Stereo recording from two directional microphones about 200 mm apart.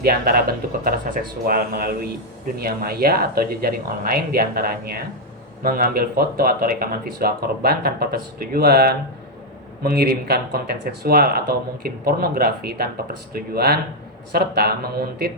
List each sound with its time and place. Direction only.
0.0 s speech: 50° right (ahead or behind)